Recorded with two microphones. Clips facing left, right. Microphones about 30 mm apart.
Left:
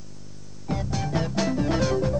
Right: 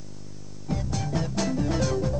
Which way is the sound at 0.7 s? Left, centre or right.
Centre.